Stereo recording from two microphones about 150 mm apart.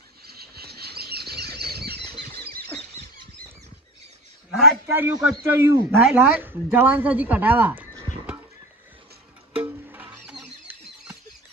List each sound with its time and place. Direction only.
0.3 s a sound: 90° right
2.3 s squeal: 90° right
4.5 s speech: 10° right (ahead or behind)
9.6 s music: 10° right (ahead or behind)